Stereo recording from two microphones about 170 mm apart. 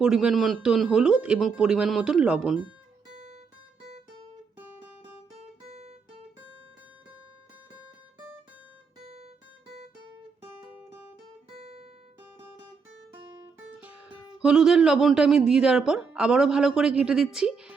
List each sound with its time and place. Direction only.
0.0 s a man's voice: 5° right (ahead or behind)
5.6 s guitar: 40° right (ahead or behind)
11.5 s guitar: 35° right (ahead or behind)
13.7 s music: 10° right (ahead or behind)
14.4 s a man's voice: 5° right (ahead or behind)